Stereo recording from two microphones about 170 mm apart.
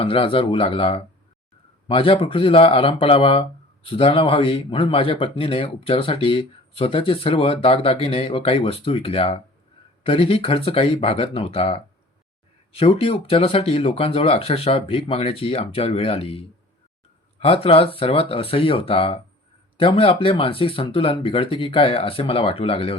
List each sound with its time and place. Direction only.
0.0 s speech: 30° left (ahead or behind)
17.4 s speech: 35° left (ahead or behind)